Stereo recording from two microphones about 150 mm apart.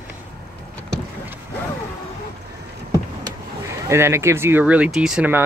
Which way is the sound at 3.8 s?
20° right (ahead or behind).